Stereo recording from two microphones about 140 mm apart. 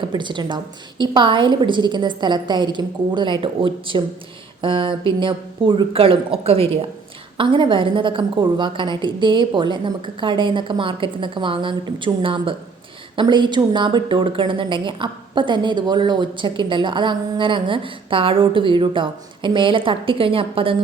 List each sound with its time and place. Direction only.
0.1 s a woman's voice: 35° right (ahead or behind)